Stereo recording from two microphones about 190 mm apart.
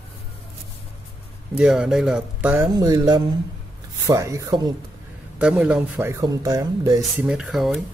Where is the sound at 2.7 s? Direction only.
20° right (ahead or behind).